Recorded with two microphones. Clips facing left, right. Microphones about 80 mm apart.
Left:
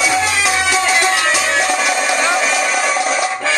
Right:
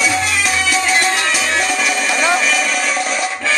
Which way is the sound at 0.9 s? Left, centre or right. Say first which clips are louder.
Left 2 dB; left.